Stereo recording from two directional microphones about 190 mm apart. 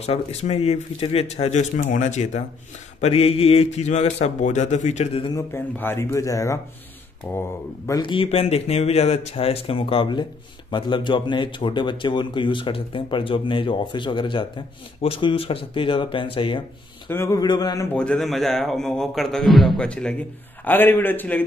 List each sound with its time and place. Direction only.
0.0 s speech: 35° left (ahead or behind)
5.3 s speech: 10° left (ahead or behind)
8.0 s speech: 25° left (ahead or behind)
17.1 s speech: 15° left (ahead or behind)
17.9 s a man's voice: 5° left (ahead or behind)